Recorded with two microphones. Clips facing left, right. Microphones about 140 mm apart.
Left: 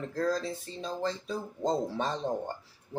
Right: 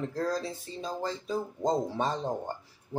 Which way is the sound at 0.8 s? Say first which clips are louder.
Even; 15° right (ahead or behind).